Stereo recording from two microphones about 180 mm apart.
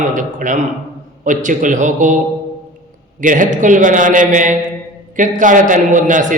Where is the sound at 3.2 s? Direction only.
45° right (ahead or behind).